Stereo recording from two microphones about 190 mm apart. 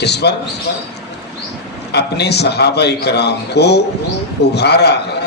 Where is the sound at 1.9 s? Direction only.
60° left (ahead or behind).